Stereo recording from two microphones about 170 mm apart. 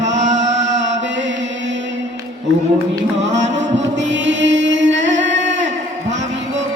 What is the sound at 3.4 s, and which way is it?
Music, 45° right (ahead or behind).